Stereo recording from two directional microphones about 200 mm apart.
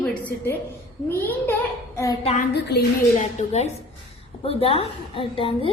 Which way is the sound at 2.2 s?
30° left (ahead or behind).